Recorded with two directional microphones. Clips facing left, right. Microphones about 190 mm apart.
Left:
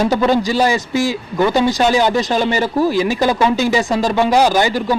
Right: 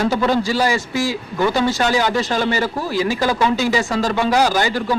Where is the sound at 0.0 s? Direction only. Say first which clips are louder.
Left 3 dB; 15° left (ahead or behind).